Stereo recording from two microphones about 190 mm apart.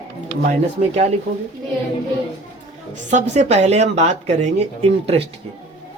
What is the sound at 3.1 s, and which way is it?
Speech, 35° right (ahead or behind).